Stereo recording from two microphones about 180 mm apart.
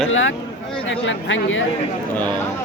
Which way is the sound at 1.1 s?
90° left.